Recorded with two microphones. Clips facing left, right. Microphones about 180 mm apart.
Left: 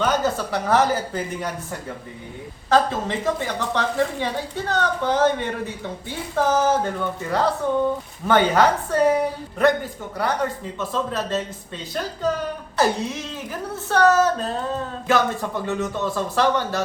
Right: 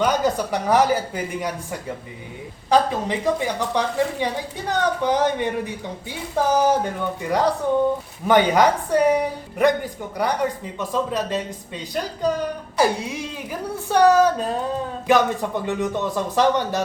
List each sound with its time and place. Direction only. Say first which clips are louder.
0.0 s a woman's voice: right 1 dB; 15° right (ahead or behind)
12.7 s a woman's voice: even; 10° right (ahead or behind)